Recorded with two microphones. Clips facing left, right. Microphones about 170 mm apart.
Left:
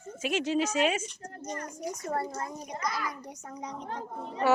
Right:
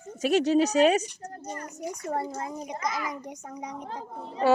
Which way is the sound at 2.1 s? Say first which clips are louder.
Right 2 dB; 20° right (ahead or behind).